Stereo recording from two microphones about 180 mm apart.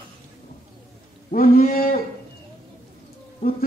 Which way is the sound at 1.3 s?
50° left (ahead or behind).